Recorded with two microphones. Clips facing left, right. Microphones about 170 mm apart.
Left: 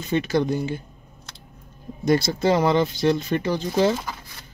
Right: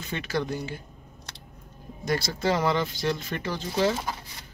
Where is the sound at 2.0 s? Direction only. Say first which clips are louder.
Left 7 dB; 20° left (ahead or behind).